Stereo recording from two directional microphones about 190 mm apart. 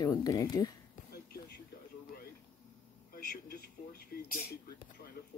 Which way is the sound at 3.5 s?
55° left (ahead or behind).